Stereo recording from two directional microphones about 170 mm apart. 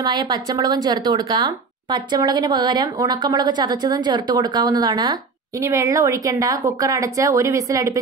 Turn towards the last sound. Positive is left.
turn(degrees=-20)  # may be behind; listen again after turning